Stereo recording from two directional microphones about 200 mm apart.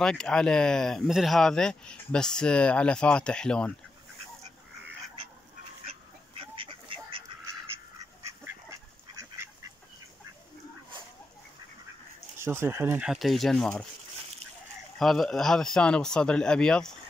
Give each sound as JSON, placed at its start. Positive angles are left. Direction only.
{"t": 0.0, "sound": "speech", "side_deg": 5}
{"t": 5.9, "sound": "duck", "side_deg": -25}
{"t": 9.2, "sound": "duck", "side_deg": -15}
{"t": 12.4, "sound": "speech", "side_deg": -10}
{"t": 15.0, "sound": "speech", "side_deg": 0}